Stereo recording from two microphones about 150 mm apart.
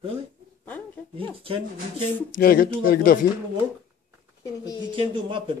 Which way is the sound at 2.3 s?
80° left.